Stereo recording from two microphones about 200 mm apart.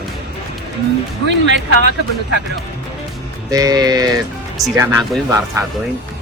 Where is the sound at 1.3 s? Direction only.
60° right (ahead or behind).